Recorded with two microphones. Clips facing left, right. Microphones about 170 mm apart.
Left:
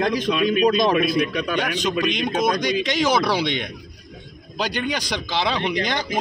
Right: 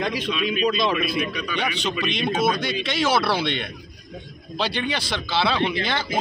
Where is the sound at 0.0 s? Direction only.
45° left (ahead or behind).